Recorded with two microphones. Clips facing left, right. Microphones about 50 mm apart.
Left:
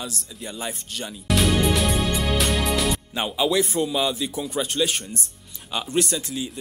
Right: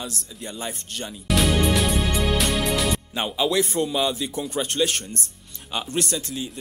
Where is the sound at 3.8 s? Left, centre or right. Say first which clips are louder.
Even; centre.